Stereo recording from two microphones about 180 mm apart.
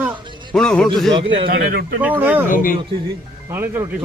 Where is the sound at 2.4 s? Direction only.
50° left (ahead or behind).